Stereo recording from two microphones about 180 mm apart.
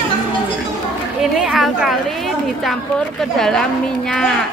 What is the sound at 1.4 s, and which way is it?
Speech, 5° right (ahead or behind).